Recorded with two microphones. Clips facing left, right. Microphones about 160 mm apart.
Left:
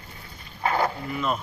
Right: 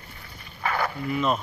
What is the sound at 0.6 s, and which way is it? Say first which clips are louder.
Dog: left 3 dB; 20° left (ahead or behind).